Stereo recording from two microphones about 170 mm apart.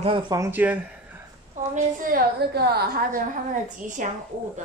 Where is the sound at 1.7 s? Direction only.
55° right (ahead or behind).